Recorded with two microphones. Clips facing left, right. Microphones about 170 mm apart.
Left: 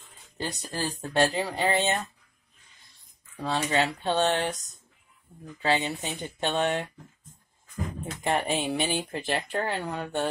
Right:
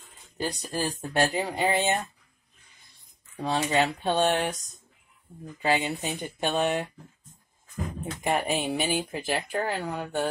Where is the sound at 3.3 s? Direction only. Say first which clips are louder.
Right 1 dB; 15° right (ahead or behind).